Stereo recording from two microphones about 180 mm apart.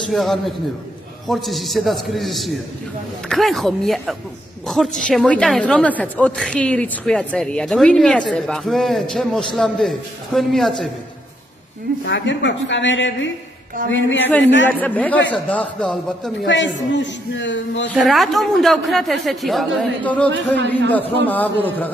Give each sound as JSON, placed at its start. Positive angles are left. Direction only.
{"t": 0.1, "sound": "a woman's voice", "side_deg": 0}
{"t": 12.0, "sound": "a man's voice", "side_deg": 75}
{"t": 14.1, "sound": "a man's voice", "side_deg": 10}
{"t": 16.4, "sound": "a man's voice", "side_deg": 90}
{"t": 17.9, "sound": "a woman's voice", "side_deg": 0}
{"t": 20.3, "sound": "a man's voice", "side_deg": -90}
{"t": 20.9, "sound": "a man's voice", "side_deg": 10}